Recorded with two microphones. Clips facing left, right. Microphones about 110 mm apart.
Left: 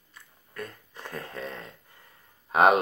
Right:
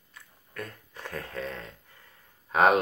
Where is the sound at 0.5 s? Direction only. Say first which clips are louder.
Left 1 dB; 5° left (ahead or behind).